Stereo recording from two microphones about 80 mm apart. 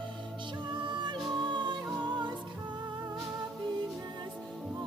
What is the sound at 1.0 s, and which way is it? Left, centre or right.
Music, right.